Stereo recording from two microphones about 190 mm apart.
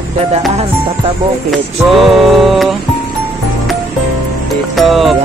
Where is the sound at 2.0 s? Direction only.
Centre (ahead or behind).